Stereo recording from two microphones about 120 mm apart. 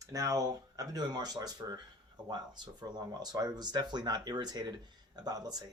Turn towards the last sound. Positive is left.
turn(degrees=-35)  # may be behind; listen again after turning